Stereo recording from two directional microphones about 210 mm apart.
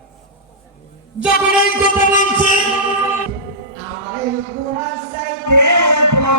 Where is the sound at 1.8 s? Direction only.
40° left (ahead or behind).